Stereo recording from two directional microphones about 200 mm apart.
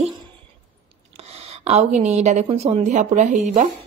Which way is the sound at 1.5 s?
30° right (ahead or behind).